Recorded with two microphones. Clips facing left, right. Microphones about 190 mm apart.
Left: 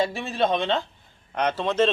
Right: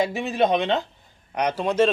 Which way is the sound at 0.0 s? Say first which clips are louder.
Right 2 dB; 15° right (ahead or behind).